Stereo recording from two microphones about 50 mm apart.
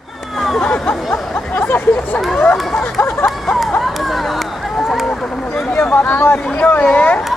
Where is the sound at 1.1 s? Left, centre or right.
Left.